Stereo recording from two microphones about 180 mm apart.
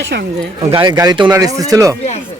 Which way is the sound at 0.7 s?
25° right (ahead or behind).